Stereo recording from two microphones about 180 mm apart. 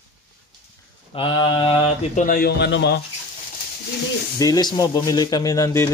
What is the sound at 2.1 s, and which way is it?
Speech, 55° left (ahead or behind).